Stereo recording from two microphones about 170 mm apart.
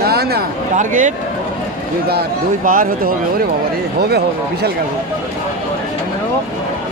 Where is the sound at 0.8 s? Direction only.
45° right (ahead or behind).